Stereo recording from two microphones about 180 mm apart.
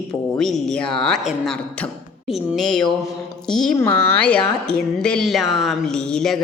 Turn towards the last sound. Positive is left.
turn(degrees=5)  # may be behind; listen again after turning